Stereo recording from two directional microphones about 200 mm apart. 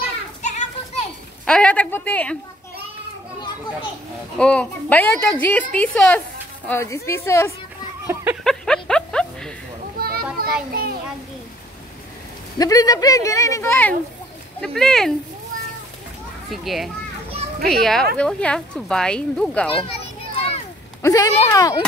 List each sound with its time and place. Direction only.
0.4 s children playing: 35° left (ahead or behind)
1.4 s a woman's voice: 5° left (ahead or behind)
4.4 s a woman's voice: 5° left (ahead or behind)
8.1 s a sound: 10° right (ahead or behind)
8.5 s a sound: 5° left (ahead or behind)
9.9 s children playing: 50° right (ahead or behind)
10.7 s a child's voice: 50° right (ahead or behind)
12.5 s a woman's voice: 20° left (ahead or behind); by 15.1 s centre (ahead or behind)
16.4 s speech: centre (ahead or behind)
20.3 s a sound: 30° left (ahead or behind)
21.0 s speech: 15° left (ahead or behind)